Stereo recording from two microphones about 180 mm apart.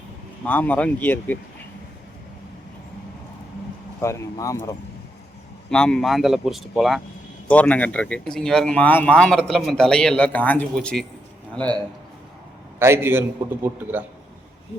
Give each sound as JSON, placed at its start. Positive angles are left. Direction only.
{"t": 0.4, "sound": "speech", "side_deg": 10}
{"t": 4.0, "sound": "speech", "side_deg": 15}
{"t": 5.7, "sound": "speech", "side_deg": 5}
{"t": 12.8, "sound": "a man's voice", "side_deg": -15}